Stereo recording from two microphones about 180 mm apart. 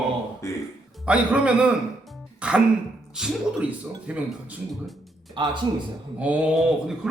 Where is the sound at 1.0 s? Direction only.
5° right (ahead or behind).